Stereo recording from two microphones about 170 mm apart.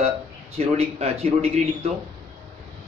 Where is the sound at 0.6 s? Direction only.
35° right (ahead or behind).